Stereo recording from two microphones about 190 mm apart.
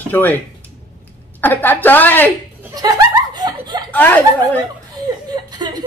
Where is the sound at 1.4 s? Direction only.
10° left (ahead or behind).